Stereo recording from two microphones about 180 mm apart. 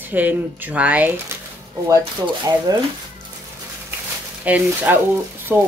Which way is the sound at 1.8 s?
20° right (ahead or behind).